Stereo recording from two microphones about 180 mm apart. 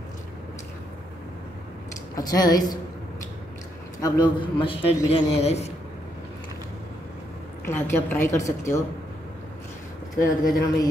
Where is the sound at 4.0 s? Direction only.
25° left (ahead or behind).